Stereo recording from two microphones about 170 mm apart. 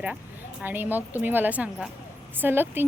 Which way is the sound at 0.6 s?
10° right (ahead or behind).